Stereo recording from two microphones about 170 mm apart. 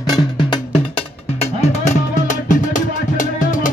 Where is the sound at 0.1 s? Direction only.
25° left (ahead or behind).